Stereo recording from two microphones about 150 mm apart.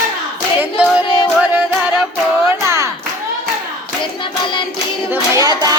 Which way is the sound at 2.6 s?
20° right (ahead or behind).